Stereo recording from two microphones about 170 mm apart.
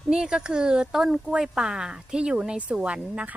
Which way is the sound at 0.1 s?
5° right (ahead or behind).